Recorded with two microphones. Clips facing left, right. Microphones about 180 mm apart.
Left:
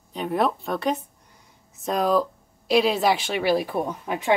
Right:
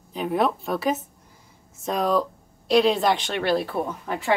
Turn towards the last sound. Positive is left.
turn(degrees=15)  # may be behind; listen again after turning